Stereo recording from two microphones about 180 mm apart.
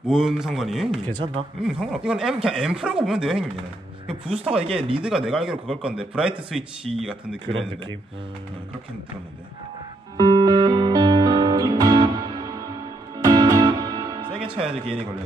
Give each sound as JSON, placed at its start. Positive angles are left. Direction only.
{"t": 0.0, "sound": "speech", "side_deg": -5}
{"t": 4.6, "sound": "speech", "side_deg": -30}
{"t": 5.0, "sound": "speech", "side_deg": -5}
{"t": 10.1, "sound": "music", "side_deg": -25}